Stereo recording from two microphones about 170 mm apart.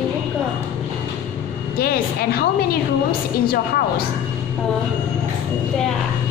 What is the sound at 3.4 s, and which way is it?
Speech, 65° left (ahead or behind).